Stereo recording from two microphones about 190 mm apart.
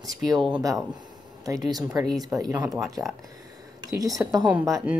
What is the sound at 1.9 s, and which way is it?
Speech, 20° right (ahead or behind).